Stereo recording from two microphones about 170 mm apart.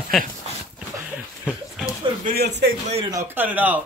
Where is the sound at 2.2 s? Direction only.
70° right (ahead or behind).